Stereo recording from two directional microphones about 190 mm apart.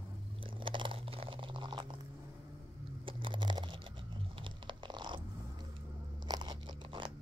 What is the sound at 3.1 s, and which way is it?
Crunch, 25° right (ahead or behind).